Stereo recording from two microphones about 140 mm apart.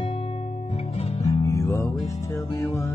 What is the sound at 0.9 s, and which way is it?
Music, 50° left (ahead or behind).